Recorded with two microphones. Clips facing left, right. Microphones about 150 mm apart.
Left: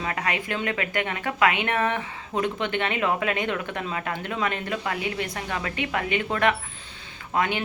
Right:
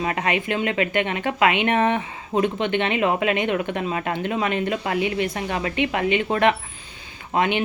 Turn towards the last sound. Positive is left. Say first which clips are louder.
# right 4 dB
turn(degrees=-20)  # may be behind; listen again after turning